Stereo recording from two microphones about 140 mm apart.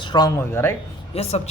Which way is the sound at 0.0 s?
30° left (ahead or behind).